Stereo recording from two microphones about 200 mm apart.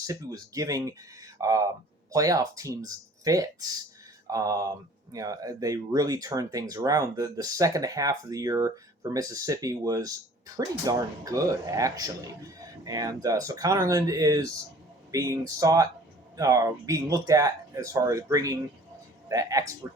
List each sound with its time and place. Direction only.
0.1 s speech: 15° right (ahead or behind)